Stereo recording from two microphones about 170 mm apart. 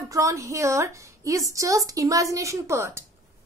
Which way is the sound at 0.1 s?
20° right (ahead or behind).